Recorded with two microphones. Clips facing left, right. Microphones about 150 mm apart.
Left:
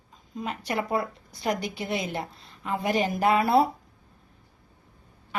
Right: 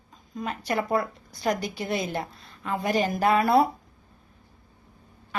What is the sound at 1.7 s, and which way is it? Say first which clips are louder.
A woman's voice: right 1 dB; 20° left (ahead or behind).